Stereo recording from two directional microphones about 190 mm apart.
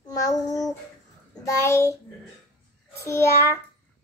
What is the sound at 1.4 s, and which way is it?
Speech, 15° left (ahead or behind).